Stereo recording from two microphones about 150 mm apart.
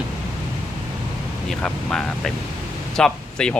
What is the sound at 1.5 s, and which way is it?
Speech, 5° left (ahead or behind).